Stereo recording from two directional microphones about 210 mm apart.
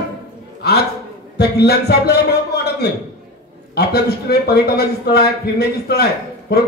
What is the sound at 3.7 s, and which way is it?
A man's voice, 50° left (ahead or behind).